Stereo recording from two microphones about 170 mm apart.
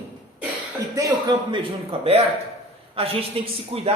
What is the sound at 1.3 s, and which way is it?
A man's voice, 30° right (ahead or behind).